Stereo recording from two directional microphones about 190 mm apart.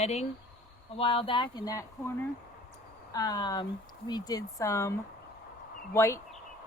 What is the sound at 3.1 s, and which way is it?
Speech, 20° left (ahead or behind).